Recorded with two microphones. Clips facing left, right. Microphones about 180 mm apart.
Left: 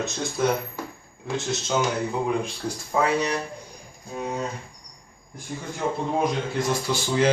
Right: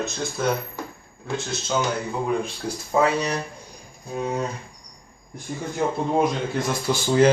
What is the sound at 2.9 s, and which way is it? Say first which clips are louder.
Speech: right 3 dB; 25° right (ahead or behind).